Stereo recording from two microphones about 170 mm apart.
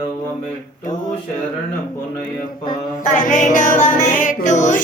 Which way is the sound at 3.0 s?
45° left (ahead or behind).